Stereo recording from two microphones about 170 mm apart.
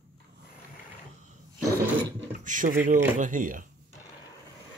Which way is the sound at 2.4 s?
50° right (ahead or behind).